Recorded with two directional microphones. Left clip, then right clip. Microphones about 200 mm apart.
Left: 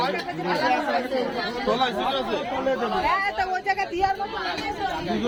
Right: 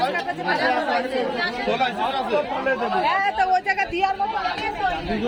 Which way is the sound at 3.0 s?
15° right (ahead or behind).